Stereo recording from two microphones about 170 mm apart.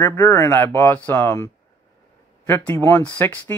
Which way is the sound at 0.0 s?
15° left (ahead or behind).